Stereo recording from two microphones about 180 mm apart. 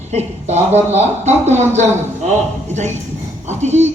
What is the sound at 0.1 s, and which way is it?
A man's voice, 35° right (ahead or behind).